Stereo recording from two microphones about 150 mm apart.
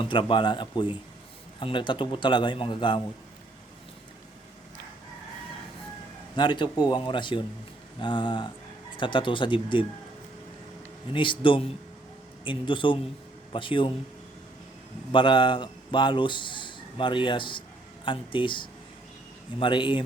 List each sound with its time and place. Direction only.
0.0 s a man's voice: 35° left (ahead or behind)
6.3 s a man's voice: 30° left (ahead or behind)
11.1 s a man's voice: 35° left (ahead or behind)
15.1 s a man's voice: 30° left (ahead or behind)